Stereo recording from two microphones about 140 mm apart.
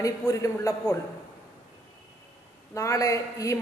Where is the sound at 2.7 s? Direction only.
25° left (ahead or behind).